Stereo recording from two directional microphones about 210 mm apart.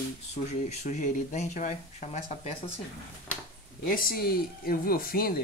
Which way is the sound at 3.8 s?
45° left (ahead or behind).